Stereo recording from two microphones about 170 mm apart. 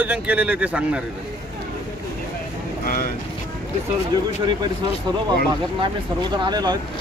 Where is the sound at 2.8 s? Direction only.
55° left (ahead or behind).